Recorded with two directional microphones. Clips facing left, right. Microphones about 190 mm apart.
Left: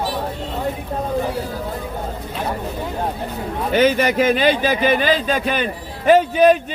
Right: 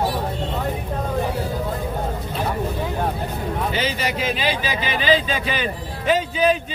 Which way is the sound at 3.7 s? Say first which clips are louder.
Left 9 dB; 60° left (ahead or behind).